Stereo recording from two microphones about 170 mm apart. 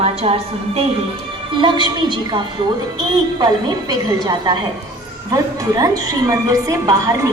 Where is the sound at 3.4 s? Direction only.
25° right (ahead or behind).